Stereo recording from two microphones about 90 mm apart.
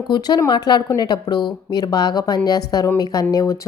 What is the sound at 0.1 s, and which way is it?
A woman's voice, 50° left (ahead or behind).